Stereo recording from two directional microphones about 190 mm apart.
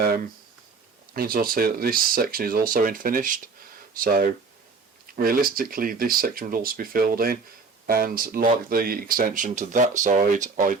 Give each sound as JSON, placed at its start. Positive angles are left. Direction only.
{"t": 1.1, "sound": "speech", "side_deg": -50}